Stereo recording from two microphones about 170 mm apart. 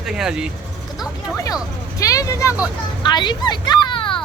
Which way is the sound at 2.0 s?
20° left (ahead or behind).